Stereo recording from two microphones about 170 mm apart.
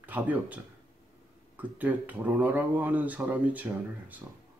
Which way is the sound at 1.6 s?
10° right (ahead or behind).